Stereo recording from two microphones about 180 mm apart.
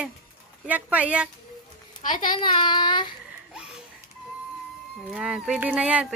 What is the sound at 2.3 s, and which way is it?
Child singing, 25° left (ahead or behind).